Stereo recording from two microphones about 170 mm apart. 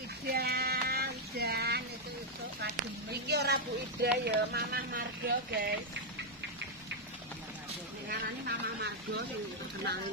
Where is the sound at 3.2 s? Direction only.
75° right (ahead or behind).